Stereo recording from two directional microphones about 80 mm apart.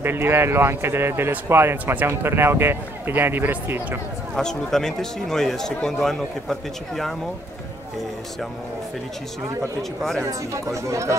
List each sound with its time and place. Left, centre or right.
0.0 s speech: right
4.4 s speech: centre
9.8 s speech: centre
10.5 s speech: right